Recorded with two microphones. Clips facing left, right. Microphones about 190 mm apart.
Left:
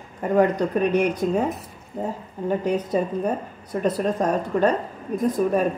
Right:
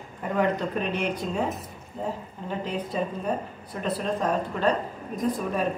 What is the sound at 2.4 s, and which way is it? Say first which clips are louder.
A woman's voice: left 8 dB; 45° left (ahead or behind).